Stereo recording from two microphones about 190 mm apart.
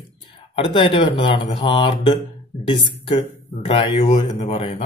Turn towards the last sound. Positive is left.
turn(degrees=30)  # may be behind; listen again after turning